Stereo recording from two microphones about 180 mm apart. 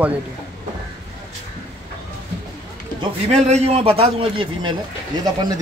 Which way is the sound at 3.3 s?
40° right (ahead or behind).